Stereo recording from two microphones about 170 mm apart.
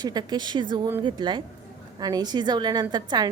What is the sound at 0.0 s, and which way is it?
A woman's voice, 25° right (ahead or behind).